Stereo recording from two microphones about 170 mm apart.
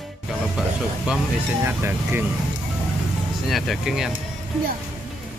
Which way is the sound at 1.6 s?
15° right (ahead or behind).